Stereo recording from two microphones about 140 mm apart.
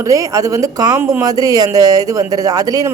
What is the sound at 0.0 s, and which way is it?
A man's voice, 25° right (ahead or behind).